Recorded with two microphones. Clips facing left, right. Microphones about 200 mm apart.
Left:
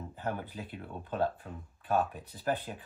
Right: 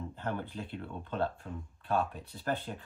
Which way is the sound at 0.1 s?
10° left (ahead or behind).